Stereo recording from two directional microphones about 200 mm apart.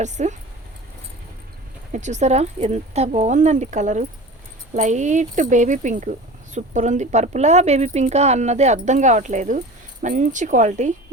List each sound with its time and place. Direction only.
0.0 s speech: 35° right (ahead or behind)
1.9 s speech: 35° right (ahead or behind)